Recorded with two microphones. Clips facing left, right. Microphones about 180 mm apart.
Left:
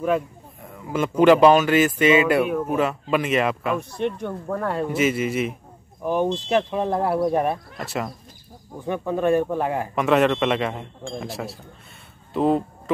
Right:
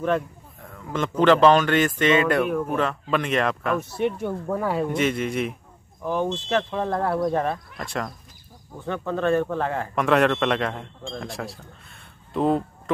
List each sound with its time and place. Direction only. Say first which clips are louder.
0.7 s speech: left 3 dB; 10° left (ahead or behind)
3.9 s speech: right 1 dB; 5° right (ahead or behind)
6.0 s speech: left 3 dB; 15° left (ahead or behind)
7.7 s speech: left 2 dB; 5° left (ahead or behind)
9.9 s speech: left 1 dB; centre (ahead or behind)